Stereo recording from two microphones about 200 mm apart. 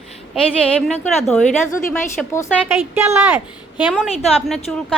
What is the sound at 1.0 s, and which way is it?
A woman's voice, 5° left (ahead or behind).